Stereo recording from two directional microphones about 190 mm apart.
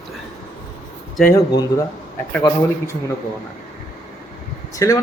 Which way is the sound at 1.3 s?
20° left (ahead or behind).